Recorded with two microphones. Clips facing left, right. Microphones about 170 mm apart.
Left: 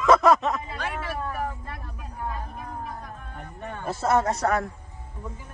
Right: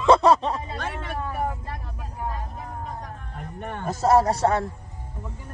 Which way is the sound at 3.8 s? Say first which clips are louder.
Right 4 dB; 35° right (ahead or behind).